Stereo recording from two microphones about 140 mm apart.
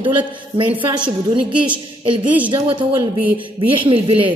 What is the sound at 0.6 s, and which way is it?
Speech, 40° right (ahead or behind).